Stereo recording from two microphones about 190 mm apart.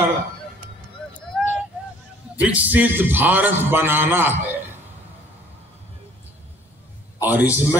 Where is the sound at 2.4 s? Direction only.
10° right (ahead or behind).